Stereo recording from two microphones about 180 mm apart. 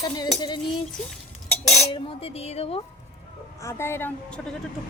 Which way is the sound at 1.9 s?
30° left (ahead or behind).